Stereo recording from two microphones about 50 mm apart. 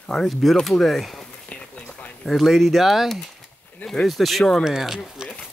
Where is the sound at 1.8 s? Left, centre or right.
Left.